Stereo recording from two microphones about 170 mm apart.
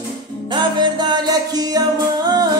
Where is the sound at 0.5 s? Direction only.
25° right (ahead or behind).